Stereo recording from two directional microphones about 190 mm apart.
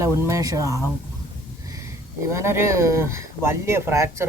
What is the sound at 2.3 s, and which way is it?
Speech, 15° right (ahead or behind).